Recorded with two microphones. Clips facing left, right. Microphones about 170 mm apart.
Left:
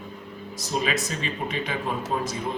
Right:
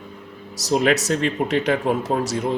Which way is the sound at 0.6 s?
80° right.